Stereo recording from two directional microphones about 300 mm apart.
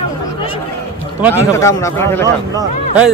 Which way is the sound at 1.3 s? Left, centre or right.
Centre.